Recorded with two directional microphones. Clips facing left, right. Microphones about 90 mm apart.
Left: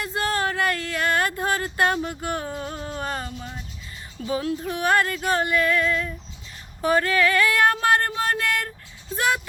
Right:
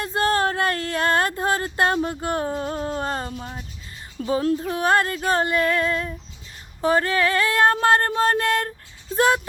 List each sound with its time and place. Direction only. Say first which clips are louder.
0.0 s speech: right 4 dB; 35° right (ahead or behind)
4.3 s female singing: right 4 dB; 35° right (ahead or behind)
9.1 s speech: right 5 dB; 35° right (ahead or behind)